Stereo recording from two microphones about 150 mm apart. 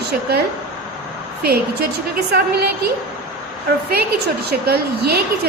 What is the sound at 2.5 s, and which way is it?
Speech, 90° right.